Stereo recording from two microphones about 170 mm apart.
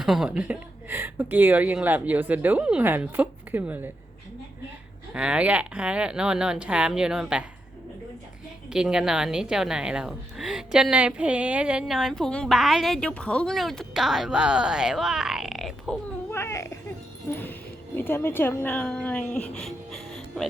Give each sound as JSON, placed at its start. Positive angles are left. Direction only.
{"t": 0.0, "sound": "speech", "side_deg": 0}
{"t": 5.1, "sound": "speech", "side_deg": -5}
{"t": 8.7, "sound": "a woman's voice", "side_deg": -5}
{"t": 16.3, "sound": "a child's voice", "side_deg": 15}
{"t": 17.2, "sound": "music", "side_deg": 10}
{"t": 17.9, "sound": "speech", "side_deg": 10}